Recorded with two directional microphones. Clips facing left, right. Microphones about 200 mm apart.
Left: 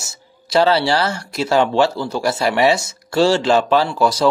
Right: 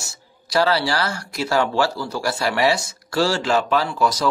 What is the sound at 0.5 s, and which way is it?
Speech, 25° left (ahead or behind).